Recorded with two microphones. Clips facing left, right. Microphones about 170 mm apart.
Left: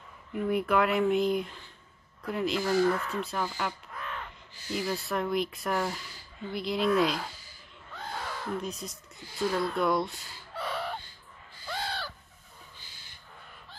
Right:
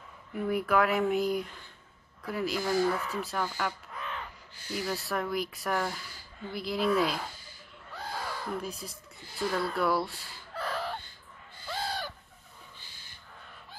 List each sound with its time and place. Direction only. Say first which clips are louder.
0.5 s speech: even; centre (ahead or behind)
3.9 s crow: even; centre (ahead or behind)
4.9 s speech: left 2 dB; centre (ahead or behind)
7.9 s caw: even; 5° right (ahead or behind)
9.4 s speech: left 2 dB; centre (ahead or behind)
10.7 s chicken: even; centre (ahead or behind)
11.7 s owl: right 1 dB; 10° right (ahead or behind)